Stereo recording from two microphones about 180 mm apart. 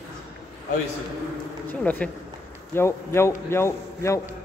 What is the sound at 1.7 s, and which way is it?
A man's voice, 10° left (ahead or behind).